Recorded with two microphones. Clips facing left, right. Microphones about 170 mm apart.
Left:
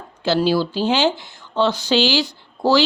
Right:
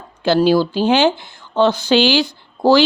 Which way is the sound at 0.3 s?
50° right (ahead or behind).